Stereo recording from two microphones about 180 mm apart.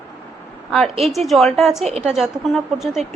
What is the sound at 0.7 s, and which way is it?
A woman's voice, centre (ahead or behind).